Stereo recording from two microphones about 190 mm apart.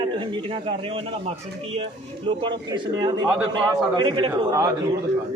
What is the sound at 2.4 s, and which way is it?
A man's voice, 25° right (ahead or behind).